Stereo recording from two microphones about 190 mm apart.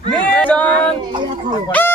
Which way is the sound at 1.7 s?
10° left (ahead or behind).